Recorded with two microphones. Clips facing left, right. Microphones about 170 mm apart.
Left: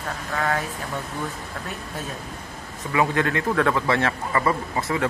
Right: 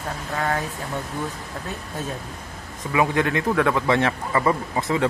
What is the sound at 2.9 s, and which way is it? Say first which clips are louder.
A man's voice: right 1 dB; 15° right (ahead or behind).